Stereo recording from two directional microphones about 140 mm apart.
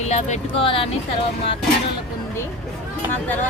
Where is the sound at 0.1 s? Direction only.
55° left (ahead or behind).